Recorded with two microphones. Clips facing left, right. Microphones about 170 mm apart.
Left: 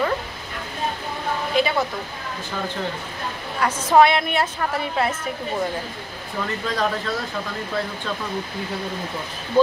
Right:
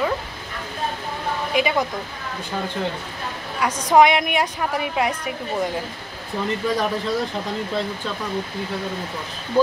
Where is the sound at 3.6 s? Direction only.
15° right (ahead or behind).